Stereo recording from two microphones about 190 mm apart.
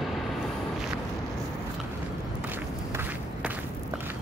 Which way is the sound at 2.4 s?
10° right (ahead or behind).